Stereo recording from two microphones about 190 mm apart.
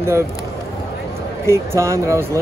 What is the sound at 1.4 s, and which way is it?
Speech, 15° right (ahead or behind).